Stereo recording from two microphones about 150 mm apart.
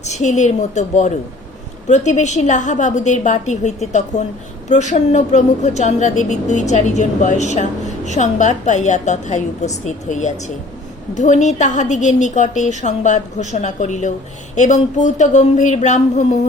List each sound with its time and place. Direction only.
0.0 s a woman's voice: 50° left (ahead or behind)